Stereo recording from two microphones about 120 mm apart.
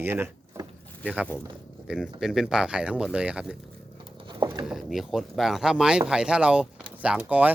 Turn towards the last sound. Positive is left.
turn(degrees=-10)  # may be behind; listen again after turning